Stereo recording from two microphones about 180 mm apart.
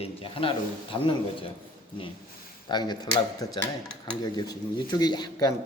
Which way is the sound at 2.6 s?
25° left (ahead or behind).